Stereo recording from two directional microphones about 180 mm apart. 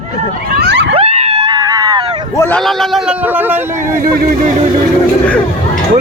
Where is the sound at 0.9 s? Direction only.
35° right (ahead or behind).